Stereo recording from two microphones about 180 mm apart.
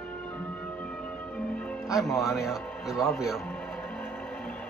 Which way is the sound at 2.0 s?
Centre (ahead or behind).